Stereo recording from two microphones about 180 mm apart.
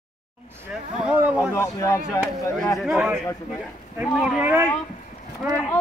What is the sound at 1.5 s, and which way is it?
Speech, 15° left (ahead or behind).